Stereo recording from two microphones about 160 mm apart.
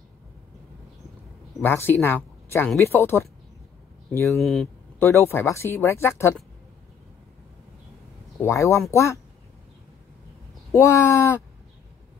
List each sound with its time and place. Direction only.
1.6 s speech: 15° left (ahead or behind)
4.4 s speech: centre (ahead or behind)
4.9 s speech: 15° left (ahead or behind)
8.4 s speech: 15° left (ahead or behind)
10.8 s speech: 15° left (ahead or behind)